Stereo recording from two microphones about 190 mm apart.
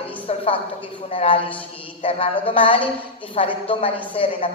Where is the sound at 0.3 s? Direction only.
35° left (ahead or behind).